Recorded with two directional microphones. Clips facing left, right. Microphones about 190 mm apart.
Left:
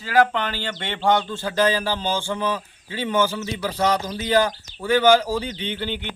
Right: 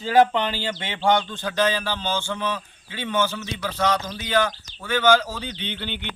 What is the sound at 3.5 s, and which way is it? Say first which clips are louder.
Speech: left 1 dB; 35° left (ahead or behind).